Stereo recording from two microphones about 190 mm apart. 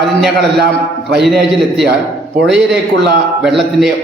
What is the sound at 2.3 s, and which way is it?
Speech, 70° right (ahead or behind).